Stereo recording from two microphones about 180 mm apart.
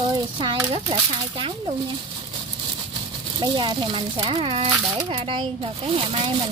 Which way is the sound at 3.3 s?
25° right (ahead or behind).